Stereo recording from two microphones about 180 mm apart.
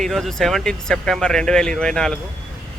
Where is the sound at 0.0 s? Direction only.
Centre (ahead or behind).